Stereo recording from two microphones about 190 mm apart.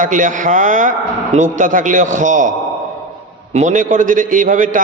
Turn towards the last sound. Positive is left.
turn(degrees=-45)  # may be behind; listen again after turning